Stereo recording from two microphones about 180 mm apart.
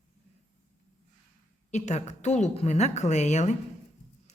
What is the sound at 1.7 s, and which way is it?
A woman's voice, 40° left (ahead or behind).